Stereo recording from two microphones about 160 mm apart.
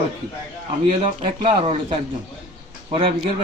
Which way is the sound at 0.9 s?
35° right (ahead or behind).